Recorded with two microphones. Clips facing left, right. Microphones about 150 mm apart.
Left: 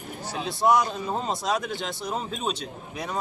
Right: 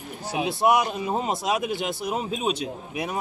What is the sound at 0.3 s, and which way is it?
Speech, 20° right (ahead or behind).